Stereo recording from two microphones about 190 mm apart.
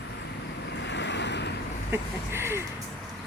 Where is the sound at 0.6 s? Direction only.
65° left (ahead or behind).